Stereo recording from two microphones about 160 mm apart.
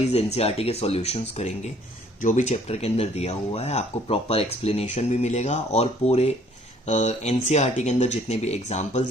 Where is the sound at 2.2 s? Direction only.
50° left (ahead or behind).